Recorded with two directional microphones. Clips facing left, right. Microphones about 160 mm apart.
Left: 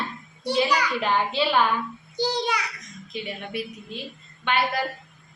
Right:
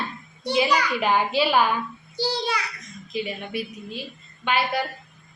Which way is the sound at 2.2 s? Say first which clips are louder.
Left 1 dB; 15° left (ahead or behind).